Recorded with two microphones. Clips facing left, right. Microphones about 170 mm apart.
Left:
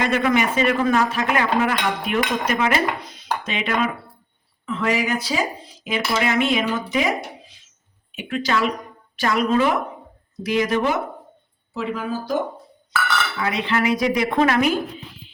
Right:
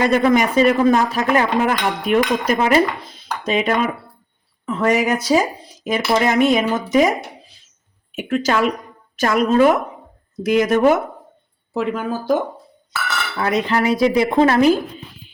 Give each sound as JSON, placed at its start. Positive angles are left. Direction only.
{"t": 0.0, "sound": "speech", "side_deg": -35}
{"t": 3.0, "sound": "dishes", "side_deg": -40}
{"t": 4.6, "sound": "speech", "side_deg": -45}
{"t": 13.4, "sound": "speech", "side_deg": -45}